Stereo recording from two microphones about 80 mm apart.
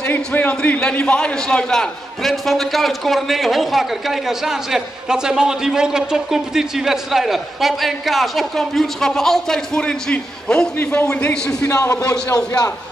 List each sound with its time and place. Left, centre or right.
0.0 s a man's voice: centre
11.7 s a man's voice: left
12.0 s a man's voice: left